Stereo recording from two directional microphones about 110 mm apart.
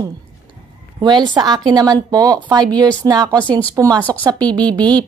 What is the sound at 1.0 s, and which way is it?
Speech, 40° right (ahead or behind).